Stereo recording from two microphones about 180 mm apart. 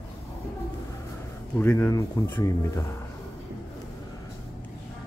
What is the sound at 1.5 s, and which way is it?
Speech, 10° left (ahead or behind).